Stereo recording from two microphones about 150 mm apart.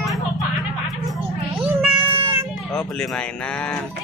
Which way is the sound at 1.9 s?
35° right (ahead or behind).